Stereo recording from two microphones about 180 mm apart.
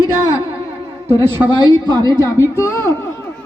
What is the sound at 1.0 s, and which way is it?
Speech, 10° right (ahead or behind).